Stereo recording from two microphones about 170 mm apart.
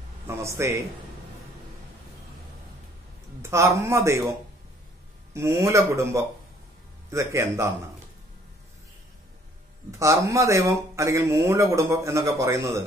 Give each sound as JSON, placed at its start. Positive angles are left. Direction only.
{"t": 0.3, "sound": "speech", "side_deg": -15}
{"t": 3.4, "sound": "speech", "side_deg": -15}
{"t": 5.3, "sound": "speech", "side_deg": -15}
{"t": 9.8, "sound": "speech", "side_deg": -20}